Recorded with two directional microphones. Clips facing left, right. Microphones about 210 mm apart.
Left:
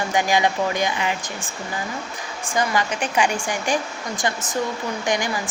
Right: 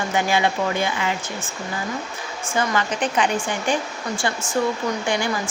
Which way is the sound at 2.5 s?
15° left (ahead or behind).